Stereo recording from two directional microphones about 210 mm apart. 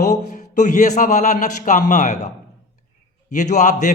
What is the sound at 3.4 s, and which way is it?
Speech, 35° left (ahead or behind).